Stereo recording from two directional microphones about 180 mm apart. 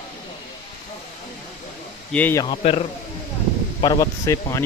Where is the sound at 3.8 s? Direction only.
20° left (ahead or behind).